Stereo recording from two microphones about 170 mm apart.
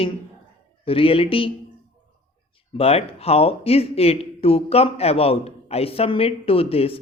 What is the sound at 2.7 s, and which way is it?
A man's voice, 35° left (ahead or behind).